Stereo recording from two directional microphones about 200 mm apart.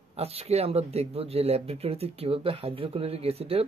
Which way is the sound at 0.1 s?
30° right (ahead or behind).